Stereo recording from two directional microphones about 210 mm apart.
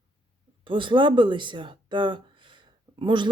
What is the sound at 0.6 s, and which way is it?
A woman's voice, 25° right (ahead or behind).